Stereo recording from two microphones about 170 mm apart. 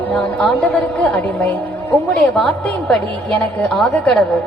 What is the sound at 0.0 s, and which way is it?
A woman's voice, 5° left (ahead or behind).